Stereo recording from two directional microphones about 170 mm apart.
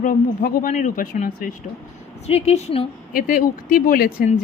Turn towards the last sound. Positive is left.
turn(degrees=55)  # may be behind; listen again after turning